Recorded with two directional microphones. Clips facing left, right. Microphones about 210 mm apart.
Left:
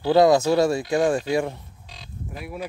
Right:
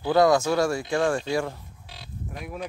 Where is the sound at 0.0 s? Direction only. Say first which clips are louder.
Left 3 dB; 25° left (ahead or behind).